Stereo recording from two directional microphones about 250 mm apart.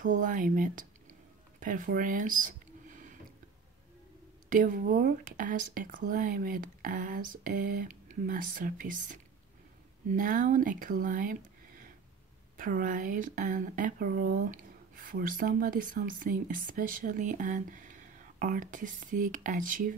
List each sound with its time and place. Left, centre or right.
0.0 s speech: right
1.6 s a sound: right
4.5 s speech: right
12.5 s speech: right